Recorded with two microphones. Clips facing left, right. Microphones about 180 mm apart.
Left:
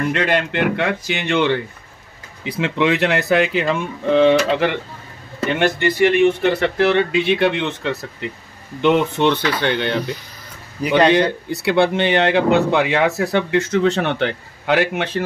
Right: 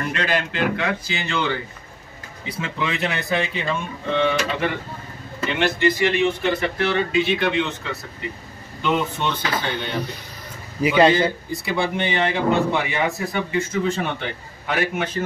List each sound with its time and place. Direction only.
0.1 s speech: 65° left (ahead or behind)
2.6 s speech: 80° left
5.5 s speech: 55° left (ahead or behind)
8.2 s speech: 90° left
8.8 s speech: 75° left (ahead or behind)
11.4 s speech: 70° left (ahead or behind)